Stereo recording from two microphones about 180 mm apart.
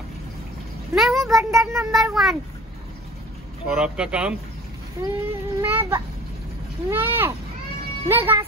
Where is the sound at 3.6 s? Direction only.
5° right (ahead or behind).